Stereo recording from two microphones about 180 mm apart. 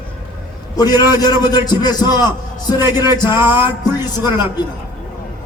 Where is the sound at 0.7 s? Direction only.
20° left (ahead or behind).